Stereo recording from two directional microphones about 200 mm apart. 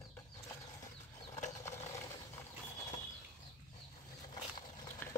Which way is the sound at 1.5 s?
15° left (ahead or behind).